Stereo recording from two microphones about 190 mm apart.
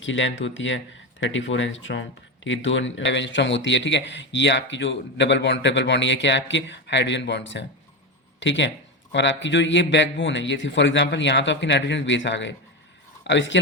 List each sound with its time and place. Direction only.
0.0 s speech: 75° left (ahead or behind)